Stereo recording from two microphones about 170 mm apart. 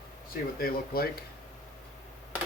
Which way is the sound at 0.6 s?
60° left (ahead or behind).